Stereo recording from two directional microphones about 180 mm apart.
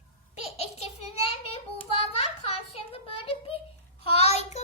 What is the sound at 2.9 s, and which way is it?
Child singing, 30° left (ahead or behind).